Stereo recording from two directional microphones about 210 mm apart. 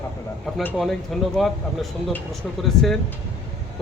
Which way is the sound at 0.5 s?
Centre (ahead or behind).